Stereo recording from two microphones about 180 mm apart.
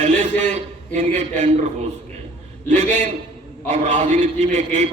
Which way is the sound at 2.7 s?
40° right (ahead or behind).